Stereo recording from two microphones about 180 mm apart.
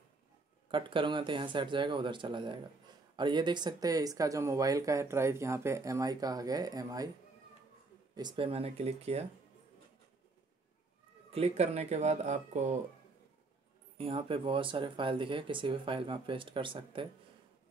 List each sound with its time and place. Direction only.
0.7 s speech: 30° right (ahead or behind)
8.1 s speech: 25° right (ahead or behind)
11.2 s speech: 35° right (ahead or behind)
13.9 s speech: 30° right (ahead or behind)